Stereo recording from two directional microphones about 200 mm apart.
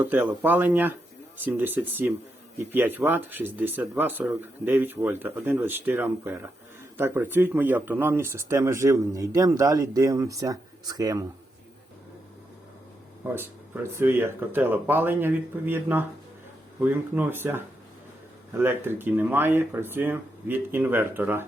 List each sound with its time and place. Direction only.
0.0 s speech: 10° right (ahead or behind)
13.2 s speech: 10° right (ahead or behind)